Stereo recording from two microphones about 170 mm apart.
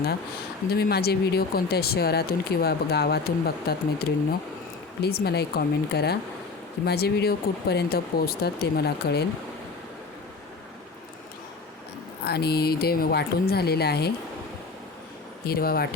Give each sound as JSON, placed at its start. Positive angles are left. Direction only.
{"t": 0.7, "sound": "speech", "side_deg": 70}
{"t": 4.9, "sound": "speech", "side_deg": 70}
{"t": 12.2, "sound": "speech", "side_deg": 70}
{"t": 15.4, "sound": "speech", "side_deg": 60}